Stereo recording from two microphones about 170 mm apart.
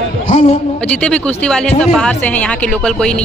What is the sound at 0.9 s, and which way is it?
Speech, 5° left (ahead or behind).